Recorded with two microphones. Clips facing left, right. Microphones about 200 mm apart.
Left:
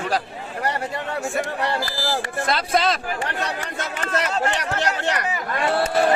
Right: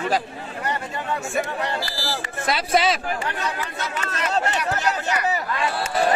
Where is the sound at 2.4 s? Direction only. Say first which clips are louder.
Right 1 dB; 5° right (ahead or behind).